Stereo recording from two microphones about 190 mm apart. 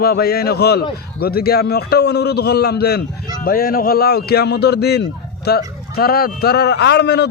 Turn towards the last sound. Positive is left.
turn(degrees=60)  # may be behind; listen again after turning